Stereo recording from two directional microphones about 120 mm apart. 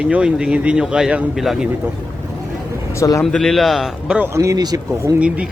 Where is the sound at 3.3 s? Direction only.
Centre (ahead or behind).